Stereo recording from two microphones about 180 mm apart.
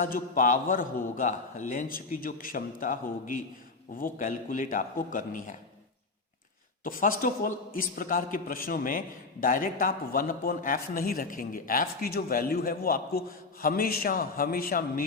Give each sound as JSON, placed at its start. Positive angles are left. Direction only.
{"t": 0.0, "sound": "a man's voice", "side_deg": 50}
{"t": 6.8, "sound": "a man's voice", "side_deg": 50}